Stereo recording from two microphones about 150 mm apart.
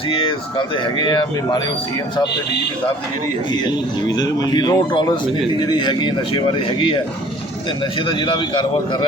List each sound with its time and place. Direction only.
0.1 s speech: 35° left (ahead or behind)
3.5 s speech: 30° left (ahead or behind)
8.0 s speech: 30° left (ahead or behind)